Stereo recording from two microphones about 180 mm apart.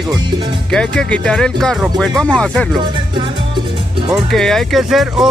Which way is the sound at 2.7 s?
25° right (ahead or behind).